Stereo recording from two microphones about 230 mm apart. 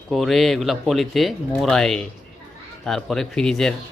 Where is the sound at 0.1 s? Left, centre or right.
Centre.